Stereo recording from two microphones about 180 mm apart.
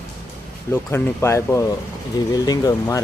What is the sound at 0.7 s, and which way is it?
Speech, 15° left (ahead or behind).